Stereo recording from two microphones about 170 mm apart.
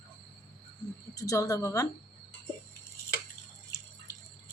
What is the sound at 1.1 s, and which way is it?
Speech, 20° left (ahead or behind).